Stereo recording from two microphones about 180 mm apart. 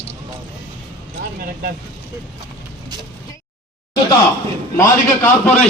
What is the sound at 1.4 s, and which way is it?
Vehicle, 55° right (ahead or behind).